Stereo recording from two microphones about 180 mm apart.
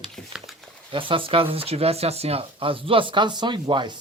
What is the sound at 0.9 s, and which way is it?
Speech, 30° right (ahead or behind).